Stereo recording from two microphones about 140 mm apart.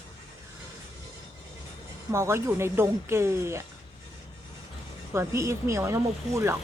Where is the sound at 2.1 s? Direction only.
20° right (ahead or behind).